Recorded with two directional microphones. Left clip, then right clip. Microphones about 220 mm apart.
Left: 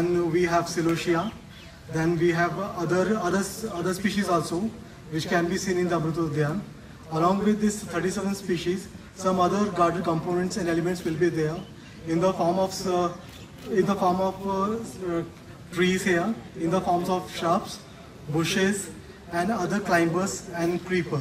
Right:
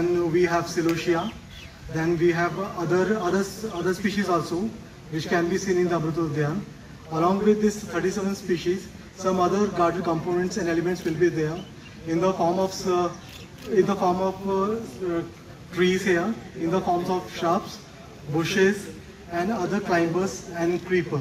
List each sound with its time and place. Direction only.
0.0 s a man's voice: 45° left (ahead or behind)